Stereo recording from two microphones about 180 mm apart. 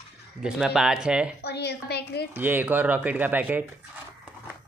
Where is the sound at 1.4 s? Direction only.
65° left (ahead or behind).